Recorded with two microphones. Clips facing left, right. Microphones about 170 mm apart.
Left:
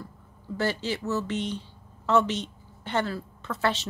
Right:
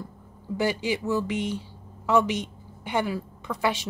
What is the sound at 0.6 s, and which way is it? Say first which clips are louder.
A woman's voice: right 3 dB; 15° right (ahead or behind).